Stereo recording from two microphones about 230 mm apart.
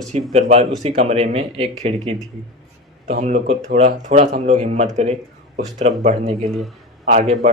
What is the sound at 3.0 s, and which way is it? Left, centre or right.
Speech, right.